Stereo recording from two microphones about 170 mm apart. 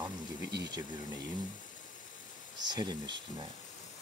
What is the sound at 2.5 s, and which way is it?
Speech, 25° right (ahead or behind).